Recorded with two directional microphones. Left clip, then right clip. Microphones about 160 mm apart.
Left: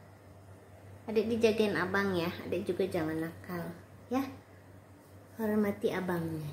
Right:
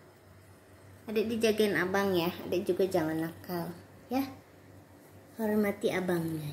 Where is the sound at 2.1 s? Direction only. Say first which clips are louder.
Right 3 dB; 25° left (ahead or behind).